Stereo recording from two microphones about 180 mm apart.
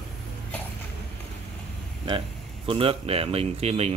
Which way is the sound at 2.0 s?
30° right (ahead or behind).